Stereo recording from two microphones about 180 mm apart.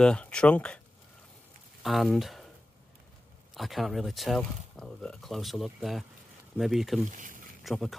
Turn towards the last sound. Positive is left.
turn(degrees=0)  # may be behind; listen again after turning